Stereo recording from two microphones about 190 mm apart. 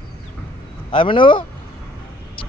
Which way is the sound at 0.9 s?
25° left (ahead or behind).